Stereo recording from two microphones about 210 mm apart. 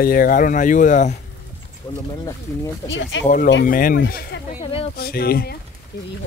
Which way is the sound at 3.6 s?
40° left (ahead or behind).